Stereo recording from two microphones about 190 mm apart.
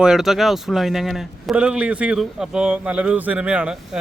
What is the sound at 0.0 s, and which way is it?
A man's voice, centre (ahead or behind).